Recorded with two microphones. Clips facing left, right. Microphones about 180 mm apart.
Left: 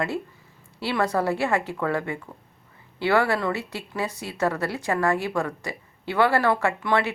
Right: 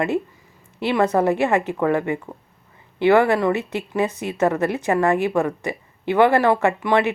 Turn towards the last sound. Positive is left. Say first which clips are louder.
# right 5 dB
turn(degrees=-20)  # may be behind; listen again after turning